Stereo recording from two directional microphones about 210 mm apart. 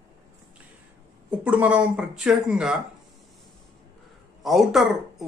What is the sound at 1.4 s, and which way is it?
Speech, 5° right (ahead or behind).